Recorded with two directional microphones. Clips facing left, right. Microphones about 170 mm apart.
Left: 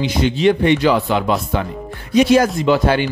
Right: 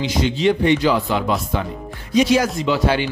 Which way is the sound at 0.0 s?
60° left (ahead or behind).